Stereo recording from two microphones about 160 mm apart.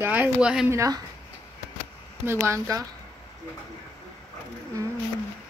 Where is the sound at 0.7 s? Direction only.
20° right (ahead or behind).